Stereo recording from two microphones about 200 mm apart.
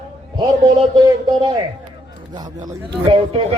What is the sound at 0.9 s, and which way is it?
A man's voice, 20° right (ahead or behind).